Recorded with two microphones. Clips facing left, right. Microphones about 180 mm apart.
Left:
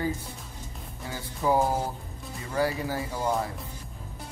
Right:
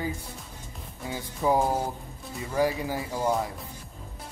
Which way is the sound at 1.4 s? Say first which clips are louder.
Even; 15° right (ahead or behind).